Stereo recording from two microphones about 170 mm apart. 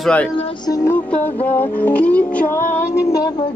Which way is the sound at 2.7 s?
20° left (ahead or behind).